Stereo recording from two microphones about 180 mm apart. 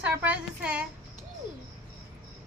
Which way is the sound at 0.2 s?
5° right (ahead or behind).